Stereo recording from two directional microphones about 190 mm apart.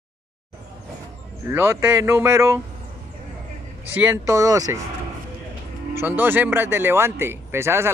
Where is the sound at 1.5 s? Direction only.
15° right (ahead or behind).